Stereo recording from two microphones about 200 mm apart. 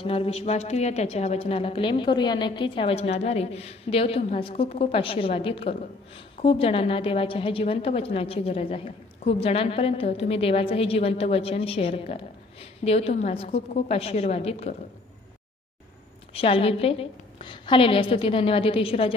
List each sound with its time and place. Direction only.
0.0 s a woman's voice: 30° left (ahead or behind)
16.3 s a woman's voice: 30° left (ahead or behind)